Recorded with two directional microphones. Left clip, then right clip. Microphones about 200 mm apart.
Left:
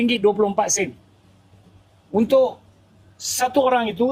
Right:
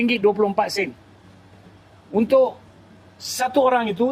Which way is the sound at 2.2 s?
35° right (ahead or behind).